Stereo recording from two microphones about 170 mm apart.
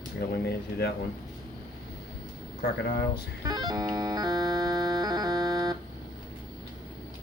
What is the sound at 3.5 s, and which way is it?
Music, 25° right (ahead or behind).